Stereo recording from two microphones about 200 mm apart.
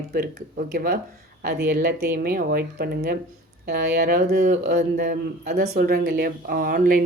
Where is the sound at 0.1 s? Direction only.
50° right (ahead or behind).